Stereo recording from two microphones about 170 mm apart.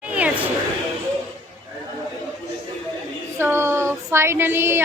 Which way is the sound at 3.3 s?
15° right (ahead or behind).